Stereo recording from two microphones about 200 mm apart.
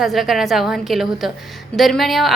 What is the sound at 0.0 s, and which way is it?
A woman's voice, centre (ahead or behind).